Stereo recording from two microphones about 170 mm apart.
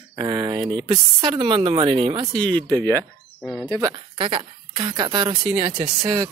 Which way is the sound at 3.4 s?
5° left (ahead or behind).